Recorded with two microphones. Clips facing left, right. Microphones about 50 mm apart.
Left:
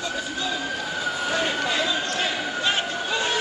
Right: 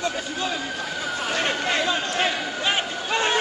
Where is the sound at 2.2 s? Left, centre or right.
Centre.